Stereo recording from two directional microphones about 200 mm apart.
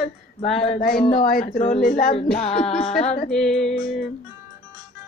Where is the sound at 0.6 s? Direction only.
45° left (ahead or behind).